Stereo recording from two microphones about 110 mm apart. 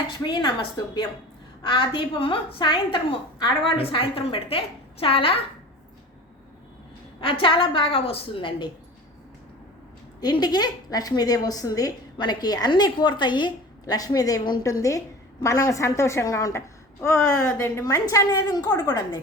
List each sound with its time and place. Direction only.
0.3 s a woman's voice: 45° left (ahead or behind)
7.2 s a woman's voice: 55° left (ahead or behind)
10.2 s a woman's voice: 40° left (ahead or behind)